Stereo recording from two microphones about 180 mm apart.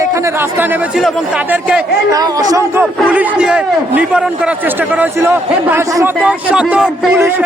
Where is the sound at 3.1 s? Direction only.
5° right (ahead or behind).